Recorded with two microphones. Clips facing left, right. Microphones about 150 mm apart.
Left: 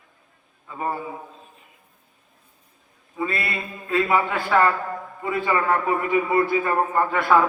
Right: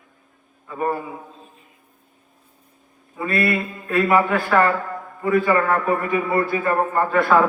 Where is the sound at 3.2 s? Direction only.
20° left (ahead or behind).